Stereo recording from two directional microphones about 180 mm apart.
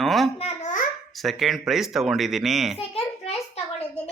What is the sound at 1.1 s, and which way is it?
Speech, centre (ahead or behind).